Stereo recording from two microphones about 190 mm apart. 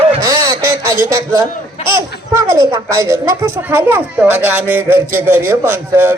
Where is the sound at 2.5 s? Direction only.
15° right (ahead or behind).